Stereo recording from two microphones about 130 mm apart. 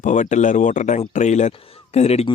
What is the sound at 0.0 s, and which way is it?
Speech, 70° left (ahead or behind).